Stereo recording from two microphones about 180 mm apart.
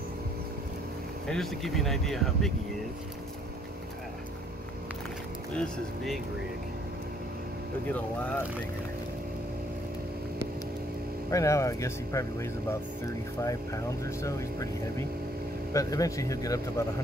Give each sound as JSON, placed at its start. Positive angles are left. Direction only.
{"t": 1.2, "sound": "speech", "side_deg": 0}
{"t": 5.6, "sound": "speech", "side_deg": 0}
{"t": 11.2, "sound": "speech", "side_deg": 15}